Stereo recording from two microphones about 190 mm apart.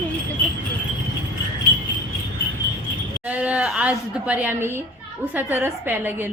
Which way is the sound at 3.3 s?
5° right (ahead or behind).